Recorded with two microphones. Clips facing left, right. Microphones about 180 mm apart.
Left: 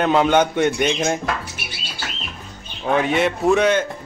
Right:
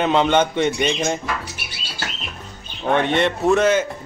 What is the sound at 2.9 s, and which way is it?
Speech, 5° left (ahead or behind).